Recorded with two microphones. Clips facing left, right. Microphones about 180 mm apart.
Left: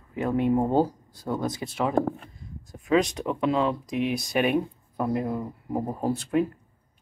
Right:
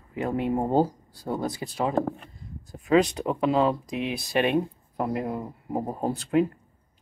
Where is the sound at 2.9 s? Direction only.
Centre (ahead or behind).